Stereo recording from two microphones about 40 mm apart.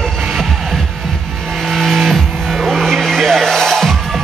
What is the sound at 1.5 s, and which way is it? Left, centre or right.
Vehicle, centre.